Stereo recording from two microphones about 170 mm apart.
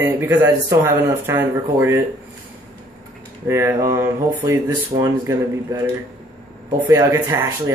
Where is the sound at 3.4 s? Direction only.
15° right (ahead or behind).